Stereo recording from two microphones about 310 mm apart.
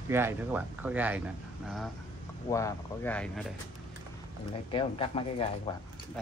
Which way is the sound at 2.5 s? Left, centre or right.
Centre.